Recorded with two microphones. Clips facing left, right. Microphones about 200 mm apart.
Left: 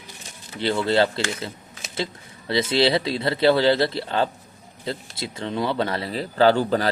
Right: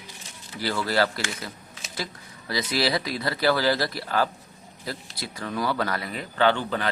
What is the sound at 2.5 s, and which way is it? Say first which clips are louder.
A man's voice: left 6 dB; 25° left (ahead or behind).